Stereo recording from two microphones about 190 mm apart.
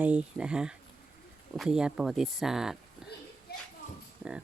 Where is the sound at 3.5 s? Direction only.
55° left (ahead or behind).